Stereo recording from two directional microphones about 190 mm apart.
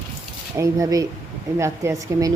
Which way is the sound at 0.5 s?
15° right (ahead or behind).